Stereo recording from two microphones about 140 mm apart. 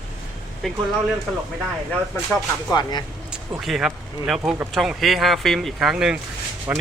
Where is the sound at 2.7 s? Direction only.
30° left (ahead or behind).